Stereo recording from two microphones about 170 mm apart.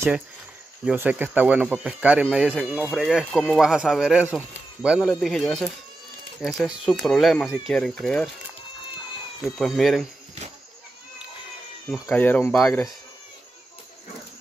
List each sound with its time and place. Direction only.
0.8 s speech: 10° right (ahead or behind)
9.4 s speech: centre (ahead or behind)
11.9 s speech: 10° left (ahead or behind)